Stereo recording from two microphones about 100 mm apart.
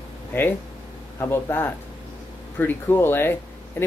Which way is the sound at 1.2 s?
25° left (ahead or behind).